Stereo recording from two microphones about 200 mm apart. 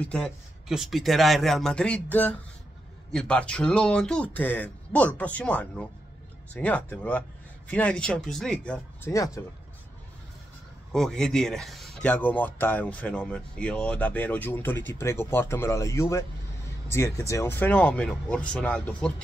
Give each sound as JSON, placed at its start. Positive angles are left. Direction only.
{"t": 0.0, "sound": "speech", "side_deg": 5}
{"t": 9.1, "sound": "speech", "side_deg": 15}
{"t": 10.9, "sound": "speech", "side_deg": 5}